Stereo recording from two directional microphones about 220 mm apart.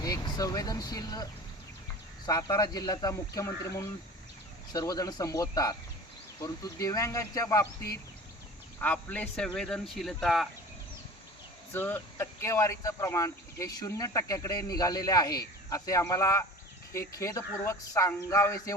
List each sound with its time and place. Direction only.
0.0 s speech: 15° left (ahead or behind); by 10.5 s centre (ahead or behind)
11.7 s speech: 10° left (ahead or behind)